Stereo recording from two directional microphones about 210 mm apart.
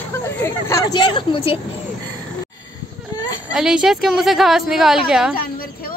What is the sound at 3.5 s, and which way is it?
A woman's voice, 5° right (ahead or behind).